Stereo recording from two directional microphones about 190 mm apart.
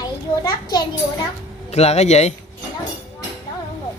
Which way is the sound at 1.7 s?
35° left (ahead or behind).